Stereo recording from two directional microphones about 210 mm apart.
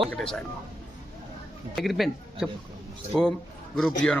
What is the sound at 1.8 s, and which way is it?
Speech, centre (ahead or behind).